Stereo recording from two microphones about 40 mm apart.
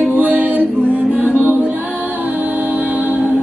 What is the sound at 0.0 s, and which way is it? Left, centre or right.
Music, right.